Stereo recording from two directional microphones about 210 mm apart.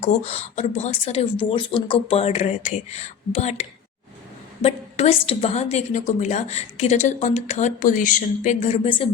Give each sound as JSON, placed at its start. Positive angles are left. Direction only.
{"t": 0.0, "sound": "a woman's voice", "side_deg": 30}